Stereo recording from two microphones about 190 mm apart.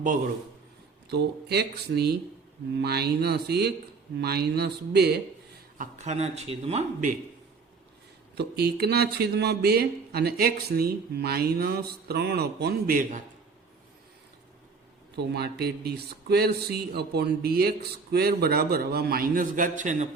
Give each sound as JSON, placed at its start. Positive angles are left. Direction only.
{"t": 1.1, "sound": "speech", "side_deg": -60}
{"t": 5.7, "sound": "a man's voice", "side_deg": -40}
{"t": 8.4, "sound": "speech", "side_deg": -55}
{"t": 15.1, "sound": "speech", "side_deg": -60}